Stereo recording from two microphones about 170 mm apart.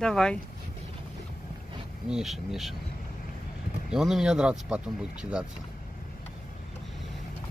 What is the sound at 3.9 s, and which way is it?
Speech, 5° right (ahead or behind).